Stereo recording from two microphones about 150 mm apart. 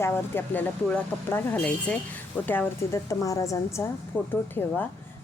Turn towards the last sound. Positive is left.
turn(degrees=10)  # may be behind; listen again after turning